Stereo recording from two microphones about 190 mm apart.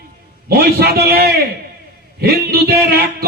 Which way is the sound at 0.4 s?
55° right (ahead or behind).